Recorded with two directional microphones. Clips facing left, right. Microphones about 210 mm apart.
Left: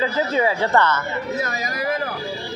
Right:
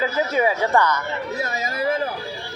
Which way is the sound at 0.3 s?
15° right (ahead or behind).